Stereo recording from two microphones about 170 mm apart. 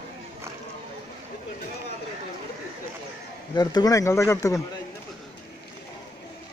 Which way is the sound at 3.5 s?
25° left (ahead or behind).